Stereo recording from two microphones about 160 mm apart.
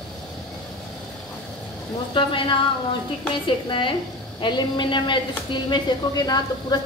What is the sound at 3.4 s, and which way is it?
A woman's voice, 30° left (ahead or behind).